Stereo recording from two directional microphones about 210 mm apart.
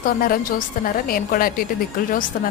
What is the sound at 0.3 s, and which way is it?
A woman's voice, 40° left (ahead or behind).